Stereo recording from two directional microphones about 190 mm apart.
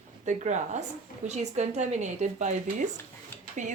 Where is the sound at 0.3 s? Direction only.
40° right (ahead or behind).